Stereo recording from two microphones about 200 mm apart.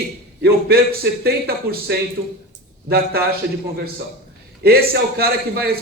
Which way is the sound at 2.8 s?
50° right (ahead or behind).